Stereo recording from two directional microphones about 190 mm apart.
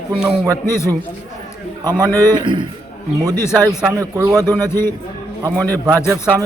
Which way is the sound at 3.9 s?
15° right (ahead or behind).